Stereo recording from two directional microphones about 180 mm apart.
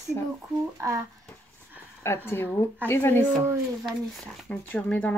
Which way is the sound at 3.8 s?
Centre (ahead or behind).